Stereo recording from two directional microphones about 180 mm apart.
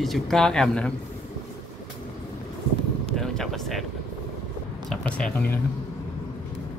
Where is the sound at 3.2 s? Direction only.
Centre (ahead or behind).